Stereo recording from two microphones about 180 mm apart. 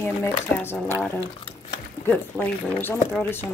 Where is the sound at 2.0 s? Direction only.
10° left (ahead or behind).